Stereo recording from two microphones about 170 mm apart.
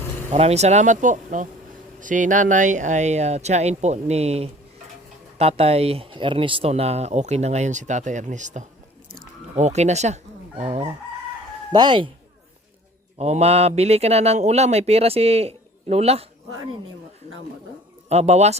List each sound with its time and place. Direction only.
0.3 s speech: 40° right (ahead or behind)
11.7 s speech: 25° right (ahead or behind)
13.1 s speech: 40° right (ahead or behind)
18.1 s speech: 40° right (ahead or behind)